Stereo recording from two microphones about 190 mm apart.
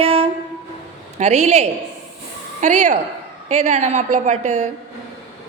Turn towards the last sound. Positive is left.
turn(degrees=-40)  # may be behind; listen again after turning